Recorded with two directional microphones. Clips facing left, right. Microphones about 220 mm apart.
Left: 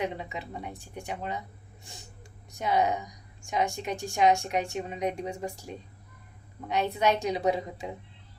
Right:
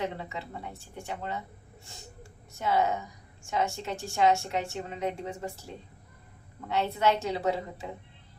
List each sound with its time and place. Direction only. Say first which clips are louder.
0.0 s a woman's voice: left 1 dB; 15° left (ahead or behind)